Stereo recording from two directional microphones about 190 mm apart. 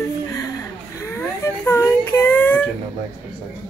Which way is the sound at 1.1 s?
15° left (ahead or behind).